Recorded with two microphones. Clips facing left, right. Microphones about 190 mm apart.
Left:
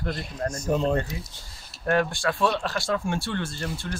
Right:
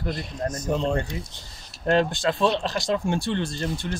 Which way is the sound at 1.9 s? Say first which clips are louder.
Right 2 dB; 25° right (ahead or behind).